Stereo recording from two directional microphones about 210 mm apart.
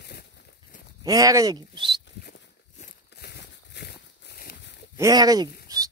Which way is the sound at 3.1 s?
50° left (ahead or behind).